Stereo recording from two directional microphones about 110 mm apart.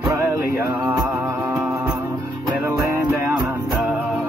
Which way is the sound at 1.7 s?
25° right (ahead or behind).